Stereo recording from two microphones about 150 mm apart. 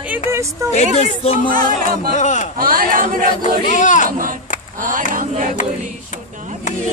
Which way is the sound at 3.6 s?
55° left (ahead or behind).